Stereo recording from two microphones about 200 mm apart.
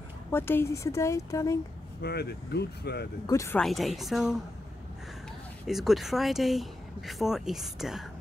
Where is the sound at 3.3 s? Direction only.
15° left (ahead or behind).